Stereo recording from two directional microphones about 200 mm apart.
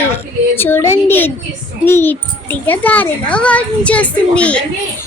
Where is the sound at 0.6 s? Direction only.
10° left (ahead or behind).